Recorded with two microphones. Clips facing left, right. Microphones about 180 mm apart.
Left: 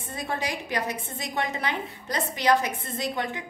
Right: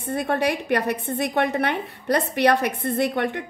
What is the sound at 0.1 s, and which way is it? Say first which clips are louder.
A woman's voice: right 8 dB; 60° right (ahead or behind).